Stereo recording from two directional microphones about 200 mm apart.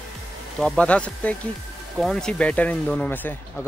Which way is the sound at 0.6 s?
5° left (ahead or behind).